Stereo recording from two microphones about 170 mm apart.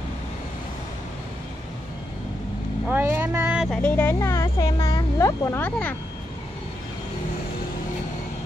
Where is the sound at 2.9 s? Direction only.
15° right (ahead or behind).